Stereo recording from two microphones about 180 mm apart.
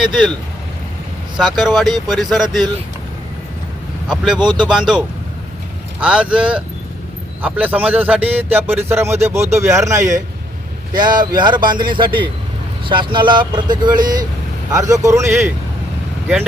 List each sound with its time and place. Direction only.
1.5 s speech: centre (ahead or behind)
4.1 s a man's voice: centre (ahead or behind)